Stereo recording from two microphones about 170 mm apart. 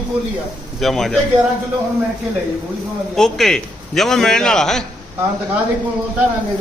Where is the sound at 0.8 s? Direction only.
Centre (ahead or behind).